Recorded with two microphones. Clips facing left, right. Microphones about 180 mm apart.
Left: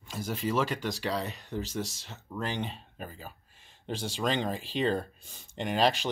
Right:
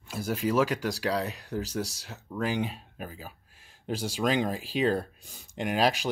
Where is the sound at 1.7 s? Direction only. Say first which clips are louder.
Right 2 dB; 35° right (ahead or behind).